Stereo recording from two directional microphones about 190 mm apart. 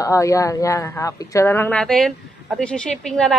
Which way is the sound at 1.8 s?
Centre (ahead or behind).